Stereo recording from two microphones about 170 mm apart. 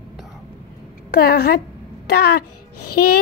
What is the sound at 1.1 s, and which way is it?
Speech, 65° left (ahead or behind).